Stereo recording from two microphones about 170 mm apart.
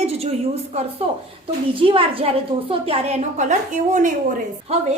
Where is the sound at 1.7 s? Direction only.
30° right (ahead or behind); by 4.1 s 45° right (ahead or behind).